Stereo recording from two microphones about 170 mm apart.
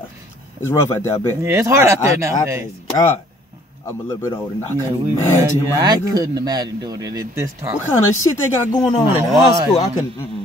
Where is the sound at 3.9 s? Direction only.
15° left (ahead or behind).